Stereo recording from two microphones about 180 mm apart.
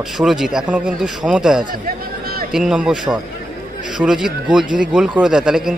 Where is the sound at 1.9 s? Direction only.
55° right (ahead or behind).